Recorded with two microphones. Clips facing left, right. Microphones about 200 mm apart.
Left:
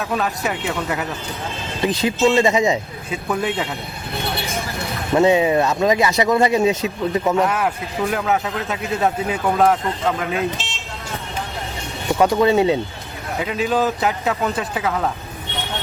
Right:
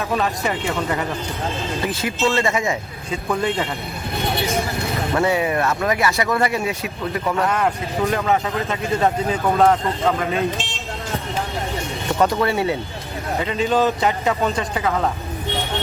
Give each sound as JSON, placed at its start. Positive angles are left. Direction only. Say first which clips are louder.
{"t": 0.0, "sound": "speech", "louder": "right 1 dB", "side_deg": 0}
{"t": 1.8, "sound": "speech", "louder": "left 6 dB", "side_deg": 20}
{"t": 3.1, "sound": "speech", "louder": "right 1 dB", "side_deg": 5}
{"t": 5.1, "sound": "speech", "louder": "left 6 dB", "side_deg": 20}
{"t": 7.4, "sound": "speech", "louder": "even", "side_deg": 5}
{"t": 12.2, "sound": "speech", "louder": "left 4 dB", "side_deg": 15}
{"t": 13.4, "sound": "speech", "louder": "right 1 dB", "side_deg": 5}